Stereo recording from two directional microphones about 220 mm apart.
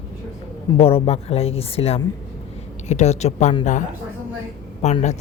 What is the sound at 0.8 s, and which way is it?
A woman's voice, 25° left (ahead or behind).